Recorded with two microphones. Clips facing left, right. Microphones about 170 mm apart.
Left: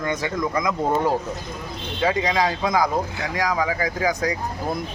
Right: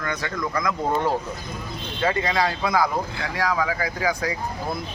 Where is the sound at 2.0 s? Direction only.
15° left (ahead or behind).